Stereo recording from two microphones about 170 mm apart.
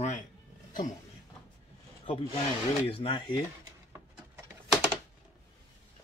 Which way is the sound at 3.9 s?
10° right (ahead or behind).